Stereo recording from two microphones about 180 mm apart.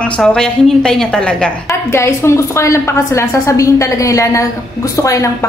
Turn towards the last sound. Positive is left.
turn(degrees=20)  # may be behind; listen again after turning